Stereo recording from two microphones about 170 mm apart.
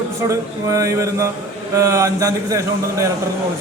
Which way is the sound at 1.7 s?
20° right (ahead or behind).